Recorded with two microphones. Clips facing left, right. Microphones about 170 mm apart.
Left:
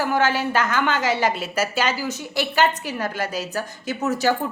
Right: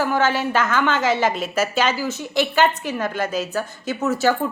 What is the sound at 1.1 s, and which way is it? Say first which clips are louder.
A woman's voice: right 2 dB; 10° left (ahead or behind).